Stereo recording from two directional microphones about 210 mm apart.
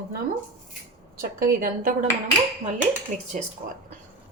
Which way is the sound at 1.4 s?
45° right (ahead or behind).